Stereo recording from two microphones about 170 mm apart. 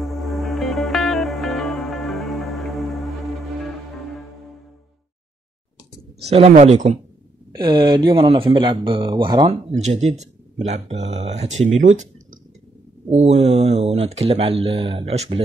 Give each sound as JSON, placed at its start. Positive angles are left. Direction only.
{"t": 0.0, "sound": "music", "side_deg": 0}
{"t": 6.5, "sound": "speech", "side_deg": -40}
{"t": 7.5, "sound": "speech", "side_deg": -25}
{"t": 9.8, "sound": "speech", "side_deg": -40}